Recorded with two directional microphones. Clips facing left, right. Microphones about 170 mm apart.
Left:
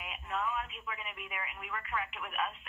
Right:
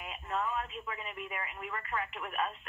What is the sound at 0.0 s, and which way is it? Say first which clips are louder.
Speech: right 1 dB; 35° right (ahead or behind).